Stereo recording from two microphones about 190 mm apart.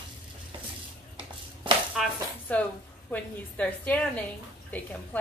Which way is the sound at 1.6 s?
25° right (ahead or behind).